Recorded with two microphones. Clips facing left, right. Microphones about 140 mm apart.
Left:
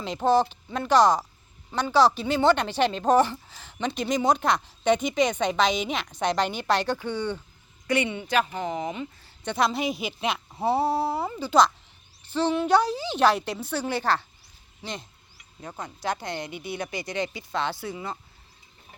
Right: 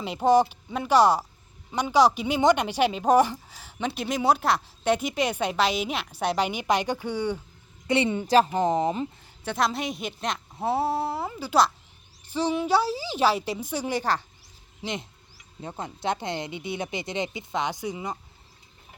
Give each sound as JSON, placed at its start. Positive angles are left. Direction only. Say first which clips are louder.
{"t": 0.0, "sound": "speech", "louder": "right 2 dB", "side_deg": -10}
{"t": 7.9, "sound": "a woman's voice", "louder": "right 2 dB", "side_deg": -25}
{"t": 8.1, "sound": "speech", "louder": "right 5 dB", "side_deg": -40}
{"t": 9.4, "sound": "a woman's voice", "louder": "left 2 dB", "side_deg": 0}